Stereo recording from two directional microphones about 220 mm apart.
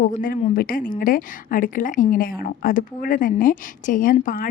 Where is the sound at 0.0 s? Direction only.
40° left (ahead or behind).